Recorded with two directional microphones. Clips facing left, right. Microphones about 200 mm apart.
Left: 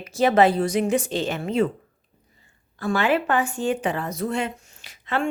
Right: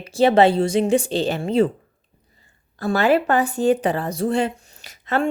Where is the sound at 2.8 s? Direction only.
40° right (ahead or behind).